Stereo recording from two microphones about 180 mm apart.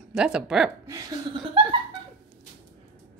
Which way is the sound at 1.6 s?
30° right (ahead or behind).